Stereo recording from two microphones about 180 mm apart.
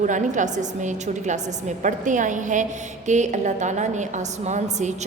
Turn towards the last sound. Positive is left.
turn(degrees=-40)  # may be behind; listen again after turning